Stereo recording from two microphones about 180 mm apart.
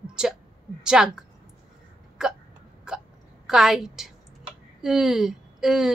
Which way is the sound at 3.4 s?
Centre (ahead or behind).